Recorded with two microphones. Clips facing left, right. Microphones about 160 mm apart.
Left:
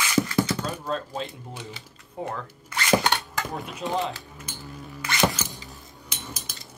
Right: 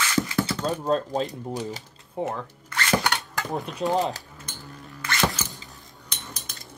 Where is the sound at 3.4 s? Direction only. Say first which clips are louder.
Right 2 dB; centre (ahead or behind).